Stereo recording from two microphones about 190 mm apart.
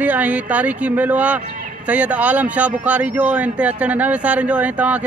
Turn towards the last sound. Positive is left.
turn(degrees=-5)  # may be behind; listen again after turning